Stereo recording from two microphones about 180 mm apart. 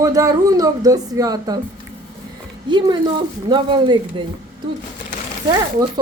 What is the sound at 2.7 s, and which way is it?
Speech, 25° right (ahead or behind).